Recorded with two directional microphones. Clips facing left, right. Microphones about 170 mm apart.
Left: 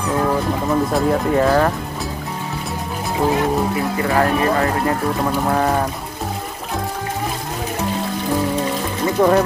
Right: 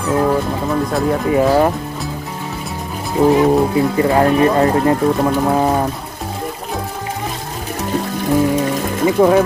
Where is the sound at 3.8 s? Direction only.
30° right (ahead or behind).